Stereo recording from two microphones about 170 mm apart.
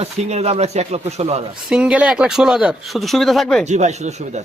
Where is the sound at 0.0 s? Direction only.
40° right (ahead or behind).